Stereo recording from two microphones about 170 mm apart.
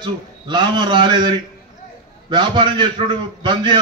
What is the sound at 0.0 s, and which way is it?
A man's voice, 25° right (ahead or behind).